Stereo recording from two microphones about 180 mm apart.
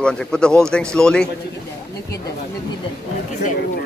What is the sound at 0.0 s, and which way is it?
A man's voice, 5° left (ahead or behind).